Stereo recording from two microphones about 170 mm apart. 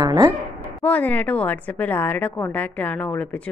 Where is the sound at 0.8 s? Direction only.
10° left (ahead or behind).